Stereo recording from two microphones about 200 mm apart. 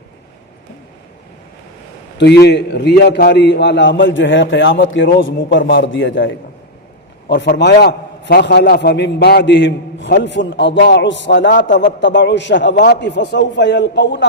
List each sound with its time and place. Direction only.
2.1 s a man's voice: 55° left (ahead or behind)
7.5 s a man's voice: 55° left (ahead or behind)